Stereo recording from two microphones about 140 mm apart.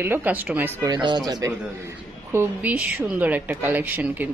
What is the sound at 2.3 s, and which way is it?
A woman's voice, 15° right (ahead or behind).